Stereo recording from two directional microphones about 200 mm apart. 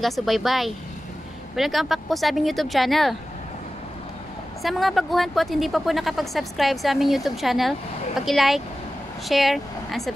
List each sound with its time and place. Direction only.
0.0 s speech: centre (ahead or behind)
4.6 s speech: centre (ahead or behind)